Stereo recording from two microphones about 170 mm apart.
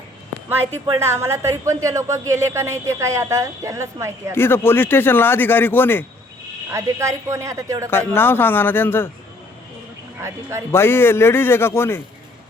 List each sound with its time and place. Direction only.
0.9 s speech: 15° right (ahead or behind)
4.4 s speech: 15° left (ahead or behind)
6.7 s speech: 15° right (ahead or behind)
7.9 s speech: 15° left (ahead or behind)
10.2 s speech: 15° right (ahead or behind)
10.7 s speech: 15° left (ahead or behind)